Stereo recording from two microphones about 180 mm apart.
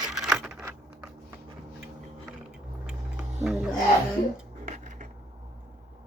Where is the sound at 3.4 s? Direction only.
5° right (ahead or behind).